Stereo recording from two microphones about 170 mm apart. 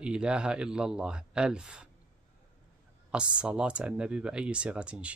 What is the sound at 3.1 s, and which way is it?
Speech, 5° right (ahead or behind).